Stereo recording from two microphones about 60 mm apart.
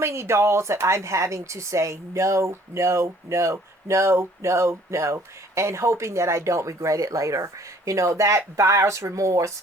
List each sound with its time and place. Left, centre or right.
0.0 s a woman's voice: right